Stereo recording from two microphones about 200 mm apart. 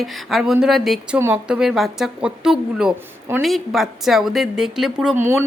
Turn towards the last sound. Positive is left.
turn(degrees=0)  # may be behind; listen again after turning